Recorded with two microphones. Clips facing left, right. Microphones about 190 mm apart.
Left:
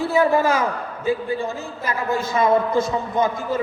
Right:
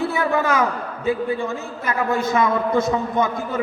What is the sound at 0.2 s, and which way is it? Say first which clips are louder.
Speech: left 5 dB; 30° left (ahead or behind).